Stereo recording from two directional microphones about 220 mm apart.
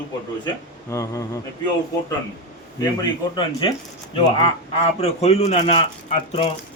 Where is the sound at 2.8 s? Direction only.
20° left (ahead or behind).